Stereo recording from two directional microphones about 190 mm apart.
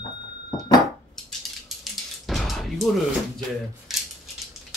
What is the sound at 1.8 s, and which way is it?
Music, centre (ahead or behind).